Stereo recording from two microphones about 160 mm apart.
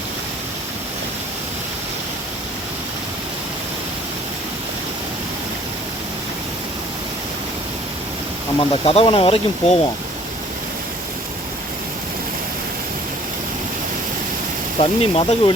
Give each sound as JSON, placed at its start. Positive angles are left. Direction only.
{"t": 8.7, "sound": "speech", "side_deg": 35}
{"t": 14.8, "sound": "speech", "side_deg": 40}